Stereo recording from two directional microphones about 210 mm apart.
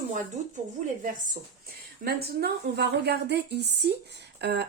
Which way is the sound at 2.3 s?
50° right (ahead or behind).